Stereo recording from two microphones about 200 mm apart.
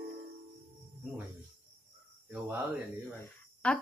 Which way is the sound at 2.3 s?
10° right (ahead or behind).